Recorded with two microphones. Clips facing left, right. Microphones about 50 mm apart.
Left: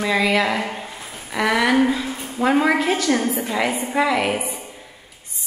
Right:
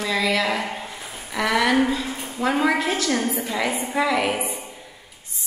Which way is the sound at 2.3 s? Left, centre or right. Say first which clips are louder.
Left 3 dB; centre.